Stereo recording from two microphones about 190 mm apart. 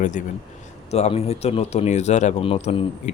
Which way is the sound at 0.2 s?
40° left (ahead or behind).